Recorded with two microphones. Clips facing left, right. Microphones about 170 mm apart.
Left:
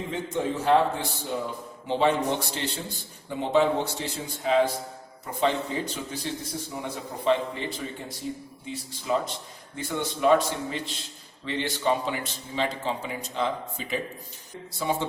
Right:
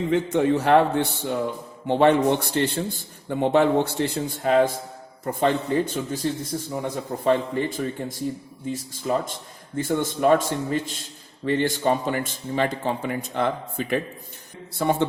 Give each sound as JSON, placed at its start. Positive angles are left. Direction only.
{"t": 0.1, "sound": "a man's voice", "side_deg": -70}